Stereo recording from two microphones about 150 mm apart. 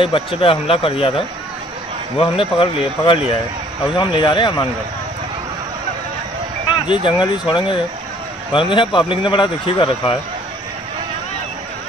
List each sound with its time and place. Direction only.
0.0 s speech: 35° left (ahead or behind)
6.9 s speech: 30° left (ahead or behind)